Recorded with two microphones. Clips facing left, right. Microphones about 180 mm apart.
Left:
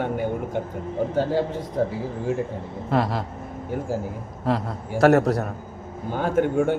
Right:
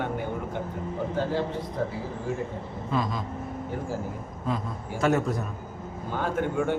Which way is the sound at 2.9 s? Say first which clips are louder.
Left 6 dB; 70° left (ahead or behind).